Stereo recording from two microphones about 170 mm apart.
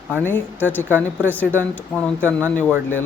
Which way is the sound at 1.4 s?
10° left (ahead or behind).